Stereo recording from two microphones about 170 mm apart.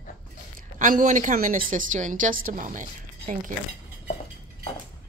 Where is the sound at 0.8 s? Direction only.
45° right (ahead or behind).